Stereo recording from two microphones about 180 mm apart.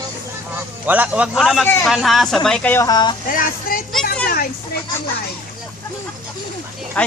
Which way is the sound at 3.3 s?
50° left (ahead or behind).